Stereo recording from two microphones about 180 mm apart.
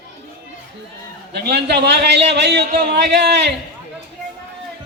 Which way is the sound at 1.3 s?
65° right (ahead or behind).